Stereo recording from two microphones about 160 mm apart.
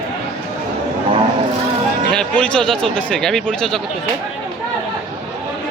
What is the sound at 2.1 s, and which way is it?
Speech, 5° left (ahead or behind).